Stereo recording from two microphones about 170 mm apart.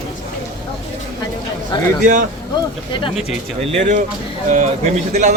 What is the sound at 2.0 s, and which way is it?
Speech, 45° right (ahead or behind).